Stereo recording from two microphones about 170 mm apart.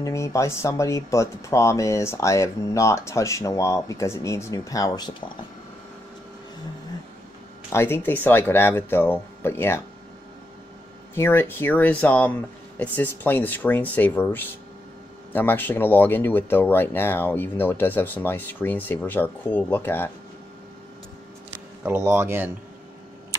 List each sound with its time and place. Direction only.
0.0 s speech: 20° left (ahead or behind)
7.7 s speech: 15° left (ahead or behind)
11.1 s speech: 10° left (ahead or behind)
21.8 s speech: 10° right (ahead or behind)